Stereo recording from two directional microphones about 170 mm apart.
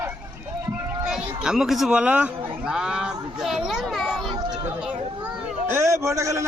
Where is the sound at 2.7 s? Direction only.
5° right (ahead or behind).